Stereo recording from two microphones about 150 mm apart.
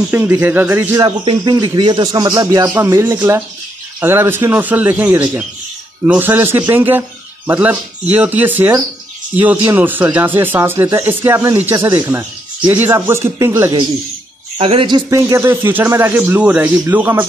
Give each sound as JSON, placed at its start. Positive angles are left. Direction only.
{"t": 0.1, "sound": "speech", "side_deg": -15}
{"t": 1.2, "sound": "speech", "side_deg": -25}
{"t": 14.6, "sound": "speech", "side_deg": -35}
{"t": 15.0, "sound": "speech", "side_deg": -20}